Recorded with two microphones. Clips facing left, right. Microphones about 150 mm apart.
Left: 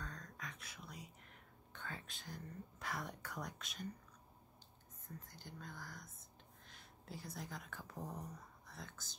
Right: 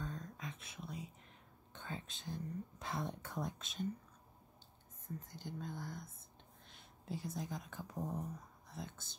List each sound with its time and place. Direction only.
0.0 s whispering: 25° right (ahead or behind)
1.7 s speech: 20° right (ahead or behind)
5.2 s speech: 20° right (ahead or behind)